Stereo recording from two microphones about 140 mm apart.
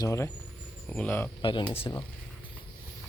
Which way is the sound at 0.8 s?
10° left (ahead or behind).